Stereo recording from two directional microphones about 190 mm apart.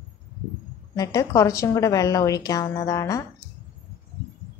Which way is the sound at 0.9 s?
20° left (ahead or behind).